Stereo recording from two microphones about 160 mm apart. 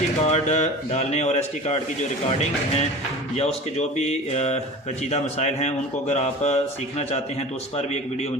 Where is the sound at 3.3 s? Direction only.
40° left (ahead or behind).